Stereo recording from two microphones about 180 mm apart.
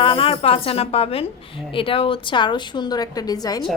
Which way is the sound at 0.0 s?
30° left (ahead or behind).